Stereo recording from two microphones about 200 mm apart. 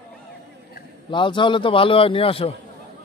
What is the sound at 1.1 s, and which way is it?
A man's voice, 25° left (ahead or behind).